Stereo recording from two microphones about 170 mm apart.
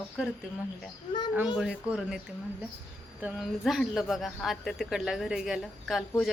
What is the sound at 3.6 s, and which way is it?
A man's voice, centre (ahead or behind).